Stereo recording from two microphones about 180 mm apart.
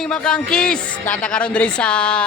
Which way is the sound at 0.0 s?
5° left (ahead or behind).